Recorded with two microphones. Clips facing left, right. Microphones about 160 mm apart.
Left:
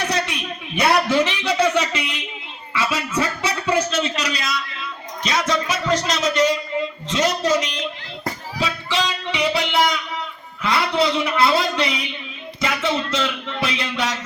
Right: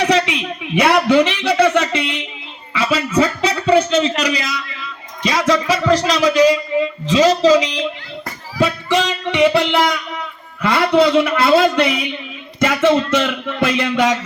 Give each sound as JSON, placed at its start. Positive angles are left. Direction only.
{"t": 0.0, "sound": "a man's voice", "side_deg": -90}
{"t": 2.7, "sound": "a sound", "side_deg": -70}
{"t": 5.3, "sound": "music", "side_deg": -70}
{"t": 8.5, "sound": "music", "side_deg": -50}